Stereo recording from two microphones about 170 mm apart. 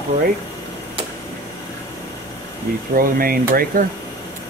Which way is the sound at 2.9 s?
55° right (ahead or behind).